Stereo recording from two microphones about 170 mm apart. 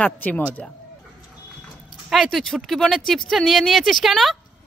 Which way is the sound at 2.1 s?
Centre (ahead or behind).